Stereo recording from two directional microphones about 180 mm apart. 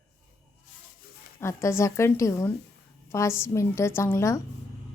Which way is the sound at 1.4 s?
15° left (ahead or behind).